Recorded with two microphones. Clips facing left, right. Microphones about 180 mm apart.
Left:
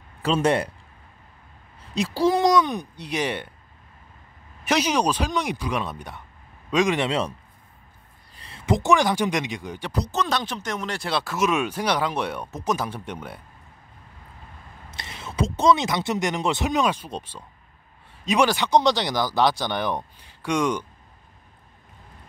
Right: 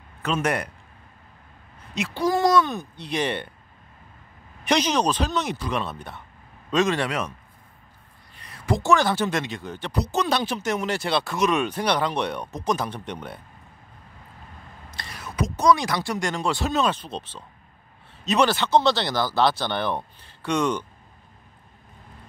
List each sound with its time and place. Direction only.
0.2 s a man's voice: 30° left (ahead or behind)
2.0 s a man's voice: 35° left (ahead or behind)
2.3 s speech: 20° left (ahead or behind)
4.6 s speech: 10° left (ahead or behind)
7.1 s speech: 30° left (ahead or behind)
8.4 s speech: 25° left (ahead or behind)
9.9 s speech: 5° right (ahead or behind)
15.0 s speech: 25° left (ahead or behind)